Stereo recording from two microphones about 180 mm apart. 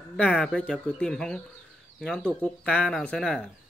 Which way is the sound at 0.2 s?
5° left (ahead or behind).